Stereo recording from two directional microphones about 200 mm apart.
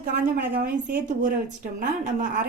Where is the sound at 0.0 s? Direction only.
50° right (ahead or behind).